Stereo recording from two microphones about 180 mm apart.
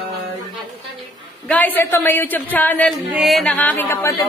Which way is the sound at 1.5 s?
10° left (ahead or behind).